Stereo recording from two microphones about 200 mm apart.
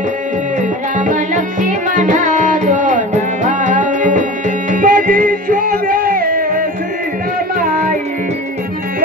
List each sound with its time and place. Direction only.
0.6 s music: 40° right (ahead or behind)